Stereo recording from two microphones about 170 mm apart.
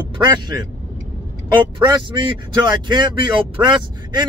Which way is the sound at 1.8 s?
25° right (ahead or behind).